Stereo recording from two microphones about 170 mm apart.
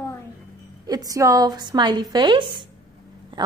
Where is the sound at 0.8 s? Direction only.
20° right (ahead or behind).